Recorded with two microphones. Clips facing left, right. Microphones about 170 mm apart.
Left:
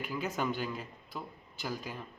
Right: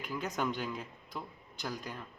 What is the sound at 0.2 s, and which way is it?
Speech, 5° left (ahead or behind).